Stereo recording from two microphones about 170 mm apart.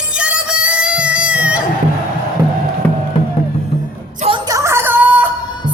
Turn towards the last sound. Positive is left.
turn(degrees=-10)  # may be behind; listen again after turning